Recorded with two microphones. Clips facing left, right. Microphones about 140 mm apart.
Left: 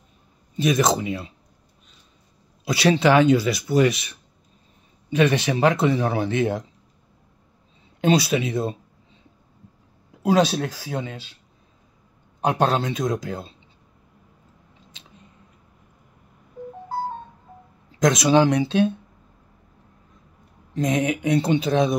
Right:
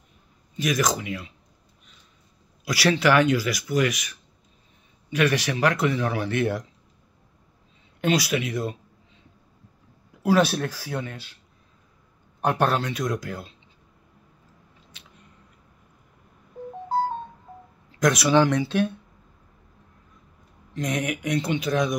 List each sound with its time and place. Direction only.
0.6 s speech: 25° left (ahead or behind)
2.6 s speech: 25° left (ahead or behind)
5.1 s speech: 25° left (ahead or behind)
8.0 s speech: 25° left (ahead or behind)
10.2 s speech: 15° left (ahead or behind)
12.4 s speech: 15° left (ahead or behind)
14.9 s a sound: 20° left (ahead or behind)
17.9 s speech: 20° left (ahead or behind)
20.7 s speech: 25° left (ahead or behind)